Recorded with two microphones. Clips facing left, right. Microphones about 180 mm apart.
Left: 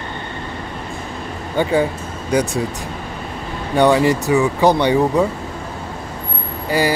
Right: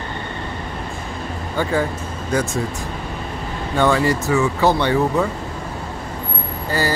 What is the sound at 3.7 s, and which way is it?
Speech, 20° left (ahead or behind).